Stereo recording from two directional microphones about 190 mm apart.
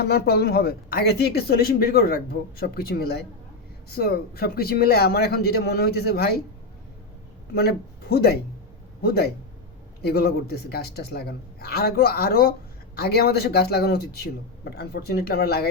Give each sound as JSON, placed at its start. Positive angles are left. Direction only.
{"t": 0.0, "sound": "speech", "side_deg": 55}
{"t": 7.5, "sound": "a man's voice", "side_deg": 55}